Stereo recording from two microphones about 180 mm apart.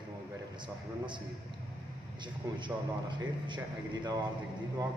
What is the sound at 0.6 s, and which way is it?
A man's voice, 25° right (ahead or behind).